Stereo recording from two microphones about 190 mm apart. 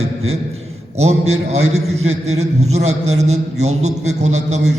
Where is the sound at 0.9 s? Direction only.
35° right (ahead or behind).